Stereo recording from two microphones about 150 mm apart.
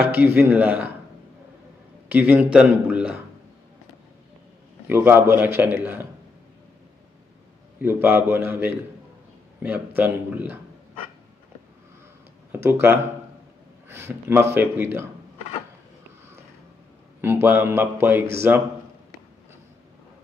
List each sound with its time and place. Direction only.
0.1 s a man's voice: 15° right (ahead or behind)
2.0 s a man's voice: 10° right (ahead or behind)
4.8 s a man's voice: 15° right (ahead or behind)
7.8 s a man's voice: 15° right (ahead or behind)
12.5 s a man's voice: 10° right (ahead or behind)
13.8 s a man's voice: 15° right (ahead or behind)
17.2 s a man's voice: 15° right (ahead or behind)